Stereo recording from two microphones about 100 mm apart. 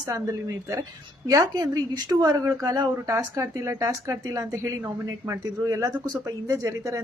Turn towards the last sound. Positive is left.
turn(degrees=-35)  # may be behind; listen again after turning